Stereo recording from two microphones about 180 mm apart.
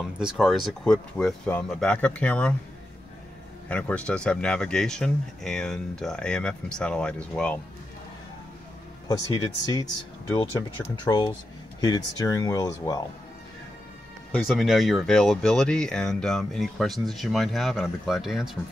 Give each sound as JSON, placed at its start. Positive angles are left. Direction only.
{"t": 0.2, "sound": "speech", "side_deg": 0}
{"t": 3.6, "sound": "speech", "side_deg": 5}
{"t": 9.0, "sound": "speech", "side_deg": 25}
{"t": 11.1, "sound": "speech", "side_deg": 20}
{"t": 14.3, "sound": "speech", "side_deg": 0}